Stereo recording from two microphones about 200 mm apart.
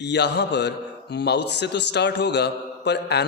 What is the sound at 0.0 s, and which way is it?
A man's voice, 60° left (ahead or behind).